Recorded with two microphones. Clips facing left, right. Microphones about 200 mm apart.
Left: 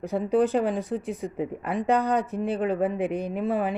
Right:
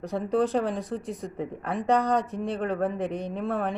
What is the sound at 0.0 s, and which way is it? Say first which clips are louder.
Speech: left 3 dB; centre (ahead or behind).